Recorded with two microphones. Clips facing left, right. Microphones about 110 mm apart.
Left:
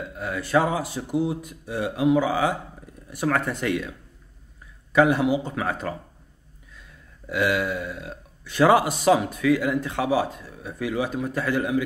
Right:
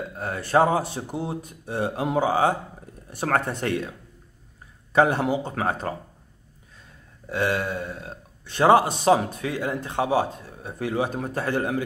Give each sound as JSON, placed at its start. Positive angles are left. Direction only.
{"t": 0.1, "sound": "a man's voice", "side_deg": -40}
{"t": 4.9, "sound": "a man's voice", "side_deg": -35}
{"t": 7.2, "sound": "a man's voice", "side_deg": -30}